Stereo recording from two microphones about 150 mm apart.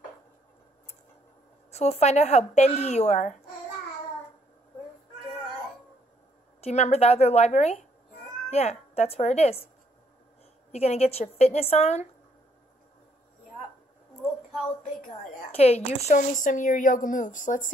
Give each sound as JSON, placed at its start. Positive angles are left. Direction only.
{"t": 1.7, "sound": "speech", "side_deg": 45}
{"t": 6.6, "sound": "speech", "side_deg": 45}
{"t": 10.7, "sound": "speech", "side_deg": 45}
{"t": 15.5, "sound": "a woman's voice", "side_deg": 45}